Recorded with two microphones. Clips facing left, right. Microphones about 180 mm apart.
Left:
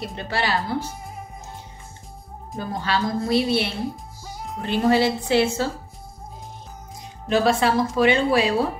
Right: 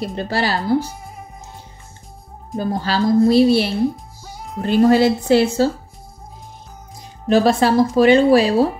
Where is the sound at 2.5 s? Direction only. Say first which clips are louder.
Right 5 dB; 35° right (ahead or behind).